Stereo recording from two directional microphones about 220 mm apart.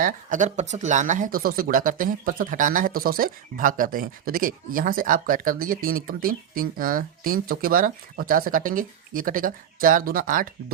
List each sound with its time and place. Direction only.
0.0 s speech: 35° right (ahead or behind)